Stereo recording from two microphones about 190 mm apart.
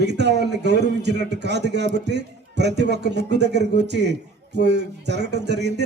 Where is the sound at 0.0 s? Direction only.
65° right (ahead or behind).